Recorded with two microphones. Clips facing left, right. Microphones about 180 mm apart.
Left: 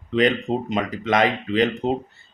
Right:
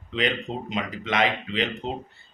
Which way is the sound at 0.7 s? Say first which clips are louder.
Left 5 dB; 45° left (ahead or behind).